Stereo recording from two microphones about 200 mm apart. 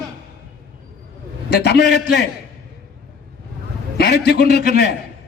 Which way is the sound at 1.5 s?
55° left (ahead or behind).